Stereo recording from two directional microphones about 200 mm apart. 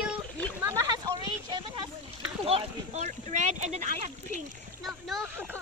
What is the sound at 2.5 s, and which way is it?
Speech, 30° right (ahead or behind).